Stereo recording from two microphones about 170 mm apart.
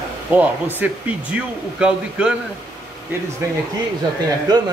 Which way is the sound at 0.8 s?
10° right (ahead or behind).